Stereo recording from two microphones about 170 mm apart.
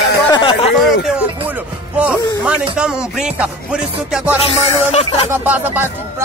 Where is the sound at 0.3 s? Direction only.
30° left (ahead or behind).